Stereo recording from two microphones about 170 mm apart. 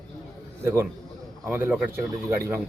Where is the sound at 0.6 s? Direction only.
15° right (ahead or behind).